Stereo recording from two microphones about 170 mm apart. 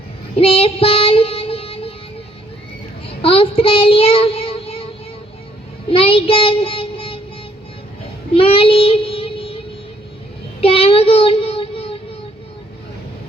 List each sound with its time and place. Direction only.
0.3 s child singing: 35° left (ahead or behind)
3.1 s child singing: 35° left (ahead or behind)
5.9 s a child's voice: 35° left (ahead or behind)
8.3 s child singing: 35° left (ahead or behind)
10.6 s child singing: 35° left (ahead or behind)